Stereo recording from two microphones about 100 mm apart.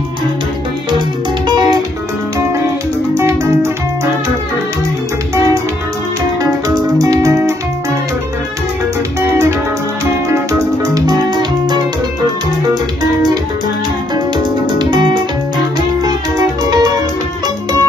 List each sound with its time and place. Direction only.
1.5 s music: 50° right (ahead or behind)
3.2 s music: 25° right (ahead or behind)
6.7 s music: 35° right (ahead or behind)
11.0 s music: 45° right (ahead or behind)
14.1 s music: 50° right (ahead or behind)
16.7 s music: 40° right (ahead or behind)